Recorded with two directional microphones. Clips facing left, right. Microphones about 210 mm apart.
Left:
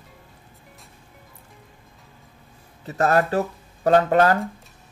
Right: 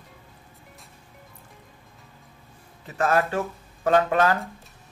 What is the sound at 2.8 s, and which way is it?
Speech, 40° left (ahead or behind).